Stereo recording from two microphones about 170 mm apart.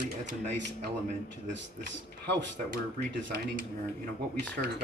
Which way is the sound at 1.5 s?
90° right.